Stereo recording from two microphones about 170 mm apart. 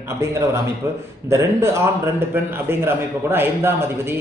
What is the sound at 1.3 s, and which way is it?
A man's voice, 15° right (ahead or behind).